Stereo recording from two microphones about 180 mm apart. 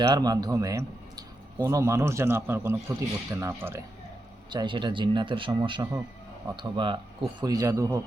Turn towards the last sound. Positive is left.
turn(degrees=-20)  # may be behind; listen again after turning